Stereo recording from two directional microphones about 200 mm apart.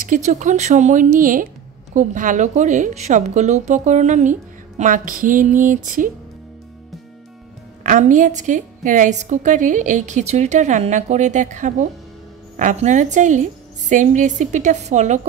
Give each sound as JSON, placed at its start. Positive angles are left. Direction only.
{"t": 0.0, "sound": "a woman's voice", "side_deg": -40}
{"t": 7.8, "sound": "a woman's voice", "side_deg": -35}